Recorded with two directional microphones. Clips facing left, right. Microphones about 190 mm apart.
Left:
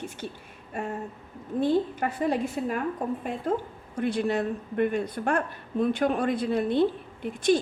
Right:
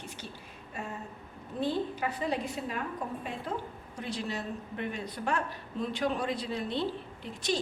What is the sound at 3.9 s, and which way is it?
Speech, 55° left (ahead or behind).